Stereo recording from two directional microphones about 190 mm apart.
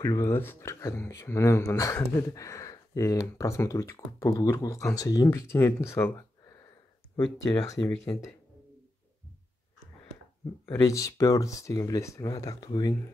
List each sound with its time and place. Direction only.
0.0 s speech: 10° left (ahead or behind)
7.8 s speech: 10° left (ahead or behind)
10.7 s speech: 15° left (ahead or behind)